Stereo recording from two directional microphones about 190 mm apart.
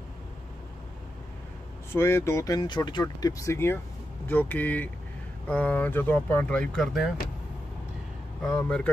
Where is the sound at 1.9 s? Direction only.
15° left (ahead or behind).